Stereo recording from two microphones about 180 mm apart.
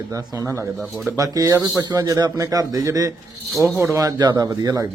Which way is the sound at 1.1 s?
20° right (ahead or behind).